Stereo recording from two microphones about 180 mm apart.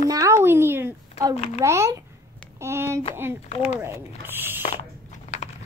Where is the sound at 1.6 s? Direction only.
15° right (ahead or behind).